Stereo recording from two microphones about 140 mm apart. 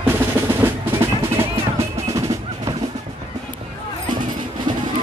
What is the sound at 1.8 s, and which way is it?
Percussion, 25° right (ahead or behind).